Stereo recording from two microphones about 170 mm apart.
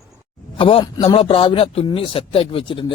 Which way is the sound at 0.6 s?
30° left (ahead or behind).